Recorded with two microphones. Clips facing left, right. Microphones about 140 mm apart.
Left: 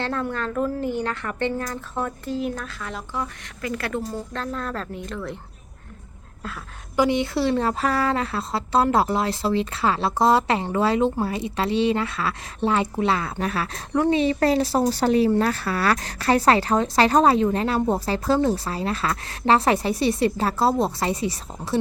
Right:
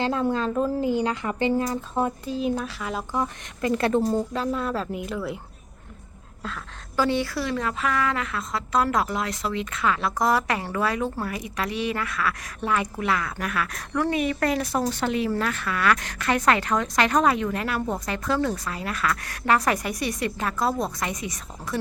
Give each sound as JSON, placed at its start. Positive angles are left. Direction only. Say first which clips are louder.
{"t": 0.0, "sound": "a woman's voice", "louder": "right 3 dB", "side_deg": -15}
{"t": 4.3, "sound": "a woman's voice", "louder": "right 3 dB", "side_deg": -5}
{"t": 6.9, "sound": "a woman's voice", "louder": "left 3 dB", "side_deg": 15}